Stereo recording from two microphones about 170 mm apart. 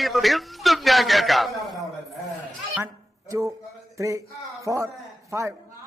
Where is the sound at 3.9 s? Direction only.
20° right (ahead or behind).